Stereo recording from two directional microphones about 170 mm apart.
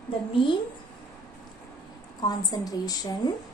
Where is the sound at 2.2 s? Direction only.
25° left (ahead or behind).